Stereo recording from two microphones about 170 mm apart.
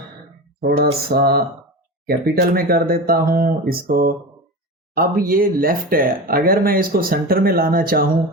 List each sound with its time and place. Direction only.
1.0 s speech: 65° right (ahead or behind)